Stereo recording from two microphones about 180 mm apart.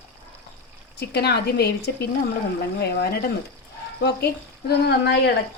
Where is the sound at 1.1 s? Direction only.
65° left (ahead or behind).